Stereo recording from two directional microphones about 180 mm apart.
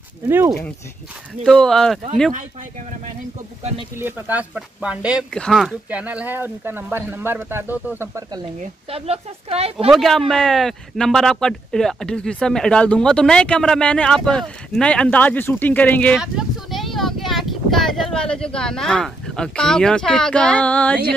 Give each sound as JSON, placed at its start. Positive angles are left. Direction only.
{"t": 1.4, "sound": "speech", "side_deg": 5}
{"t": 4.0, "sound": "speech", "side_deg": -10}
{"t": 8.9, "sound": "speech", "side_deg": -35}
{"t": 9.8, "sound": "speech", "side_deg": 0}